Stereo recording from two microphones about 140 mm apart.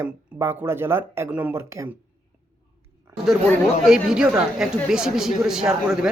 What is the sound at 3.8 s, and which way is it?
Speech, 5° right (ahead or behind).